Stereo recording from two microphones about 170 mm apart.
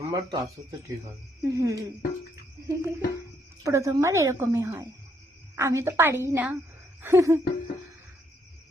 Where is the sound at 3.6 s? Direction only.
15° right (ahead or behind).